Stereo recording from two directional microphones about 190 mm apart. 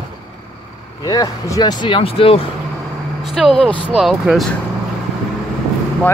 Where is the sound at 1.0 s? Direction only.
20° left (ahead or behind).